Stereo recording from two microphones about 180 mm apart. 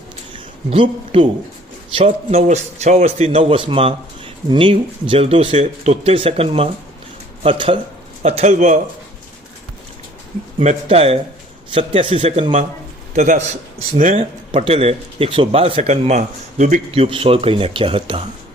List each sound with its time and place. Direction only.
0.7 s a man's voice: 30° right (ahead or behind)
8.2 s speech: 40° right (ahead or behind)
10.6 s a man's voice: 40° right (ahead or behind)
12.4 s speech: 45° right (ahead or behind)
14.2 s speech: 30° right (ahead or behind)
16.9 s speech: 30° right (ahead or behind)